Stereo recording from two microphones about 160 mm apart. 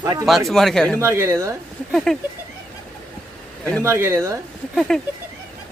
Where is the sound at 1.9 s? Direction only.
5° left (ahead or behind).